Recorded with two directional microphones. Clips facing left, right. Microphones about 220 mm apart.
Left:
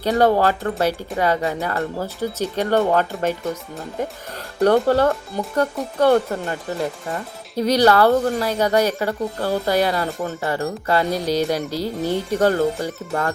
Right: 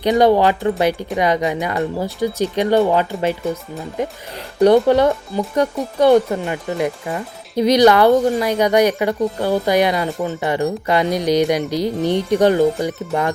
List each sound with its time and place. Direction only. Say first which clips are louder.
0.0 s speech: right 3 dB; 15° right (ahead or behind)
4.6 s speech: right 4 dB; 15° right (ahead or behind)
11.8 s speech: right 4 dB; 5° left (ahead or behind)
12.4 s speech: right 3 dB; 15° right (ahead or behind)